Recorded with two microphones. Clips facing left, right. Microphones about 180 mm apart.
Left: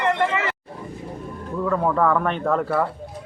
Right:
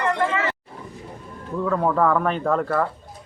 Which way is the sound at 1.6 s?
Centre (ahead or behind).